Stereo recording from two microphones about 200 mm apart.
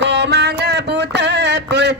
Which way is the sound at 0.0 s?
60° right (ahead or behind).